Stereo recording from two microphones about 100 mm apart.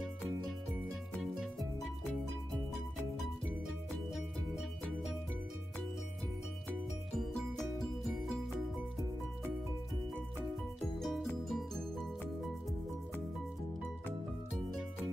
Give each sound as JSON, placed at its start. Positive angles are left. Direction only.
{"t": 4.1, "sound": "music", "side_deg": -5}
{"t": 7.2, "sound": "music", "side_deg": 5}
{"t": 11.0, "sound": "music", "side_deg": 0}